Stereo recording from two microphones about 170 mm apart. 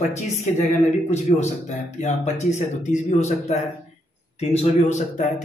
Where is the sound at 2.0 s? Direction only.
40° left (ahead or behind).